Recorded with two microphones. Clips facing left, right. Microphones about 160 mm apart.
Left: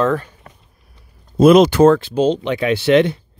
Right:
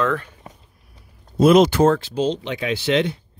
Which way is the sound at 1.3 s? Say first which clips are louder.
Left 4 dB; 65° left (ahead or behind).